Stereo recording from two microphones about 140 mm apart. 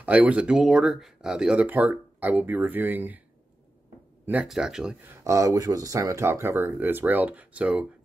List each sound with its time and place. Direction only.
0.0 s speech: 10° right (ahead or behind)
4.3 s speech: 5° right (ahead or behind)
5.2 s speech: 25° right (ahead or behind)